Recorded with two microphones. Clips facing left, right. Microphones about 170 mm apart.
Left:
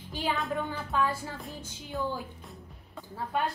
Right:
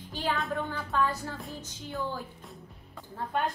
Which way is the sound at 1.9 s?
20° left (ahead or behind).